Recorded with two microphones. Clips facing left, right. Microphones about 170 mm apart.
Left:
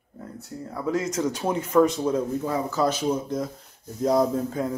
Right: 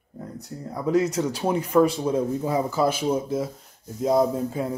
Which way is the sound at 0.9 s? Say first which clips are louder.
Right 3 dB; 20° right (ahead or behind).